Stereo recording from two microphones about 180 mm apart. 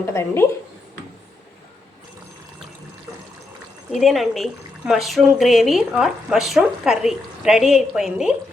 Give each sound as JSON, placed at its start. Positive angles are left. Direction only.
{"t": 0.0, "sound": "speech", "side_deg": 15}
{"t": 3.9, "sound": "speech", "side_deg": 0}